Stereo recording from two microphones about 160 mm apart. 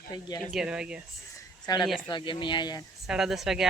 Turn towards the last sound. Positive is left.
turn(degrees=0)  # may be behind; listen again after turning